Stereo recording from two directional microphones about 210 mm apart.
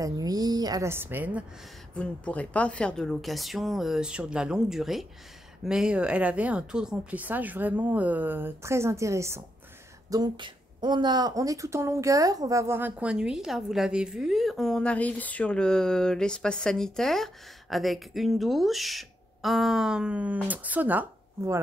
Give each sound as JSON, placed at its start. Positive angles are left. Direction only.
{"t": 0.0, "sound": "speech", "side_deg": -20}
{"t": 2.0, "sound": "a woman's voice", "side_deg": 5}